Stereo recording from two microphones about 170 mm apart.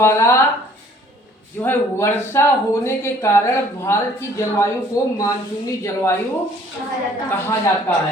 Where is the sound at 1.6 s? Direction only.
15° left (ahead or behind).